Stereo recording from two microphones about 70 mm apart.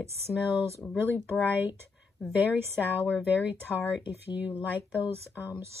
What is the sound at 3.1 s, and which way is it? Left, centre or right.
Speech, left.